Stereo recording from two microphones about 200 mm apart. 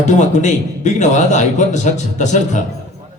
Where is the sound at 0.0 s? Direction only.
35° left (ahead or behind).